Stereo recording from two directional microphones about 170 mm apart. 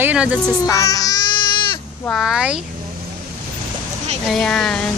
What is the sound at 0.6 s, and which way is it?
Baby cry, 20° left (ahead or behind).